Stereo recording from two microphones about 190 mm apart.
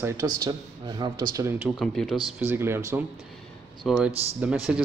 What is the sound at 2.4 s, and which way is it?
Speech, 10° right (ahead or behind).